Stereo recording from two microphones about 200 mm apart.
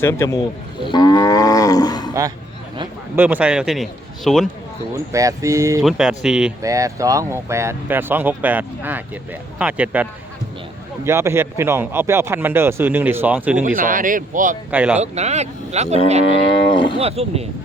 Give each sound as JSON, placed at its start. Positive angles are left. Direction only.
{"t": 0.0, "sound": "speech", "side_deg": 15}
{"t": 0.9, "sound": "cattle", "side_deg": 20}
{"t": 3.2, "sound": "a man's voice", "side_deg": -10}
{"t": 5.1, "sound": "speech", "side_deg": -15}
{"t": 5.8, "sound": "a man's voice", "side_deg": 0}
{"t": 6.6, "sound": "speech", "side_deg": -15}
{"t": 13.7, "sound": "speech", "side_deg": -45}
{"t": 14.7, "sound": "speech", "side_deg": -5}
{"t": 14.9, "sound": "speech", "side_deg": -35}
{"t": 16.7, "sound": "speech", "side_deg": 25}
{"t": 17.0, "sound": "speech", "side_deg": -30}